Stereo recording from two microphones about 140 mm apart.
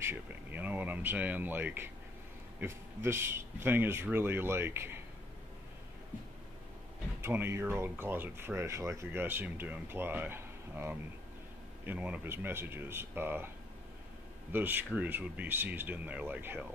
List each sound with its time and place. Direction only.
0.0 s speech: 15° right (ahead or behind)
7.2 s speech: 15° right (ahead or behind)
14.5 s speech: 15° right (ahead or behind)